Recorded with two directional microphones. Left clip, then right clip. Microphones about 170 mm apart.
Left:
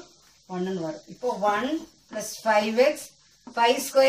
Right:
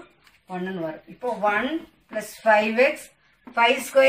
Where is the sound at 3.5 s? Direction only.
25° left (ahead or behind).